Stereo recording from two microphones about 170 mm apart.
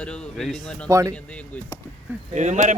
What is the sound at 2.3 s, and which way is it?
Speech, 45° right (ahead or behind).